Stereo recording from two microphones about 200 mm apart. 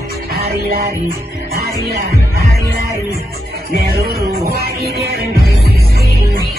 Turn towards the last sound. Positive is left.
turn(degrees=-50)  # may be behind; listen again after turning